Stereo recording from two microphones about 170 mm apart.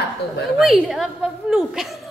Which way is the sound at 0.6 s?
Centre (ahead or behind).